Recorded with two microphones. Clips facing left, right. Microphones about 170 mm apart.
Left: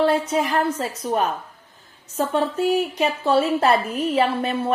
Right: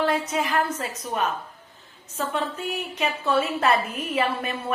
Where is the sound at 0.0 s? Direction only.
30° left (ahead or behind).